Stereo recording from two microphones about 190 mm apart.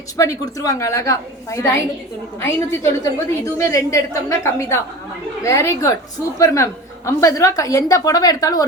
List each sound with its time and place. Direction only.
0.2 s a woman's voice: 15° left (ahead or behind)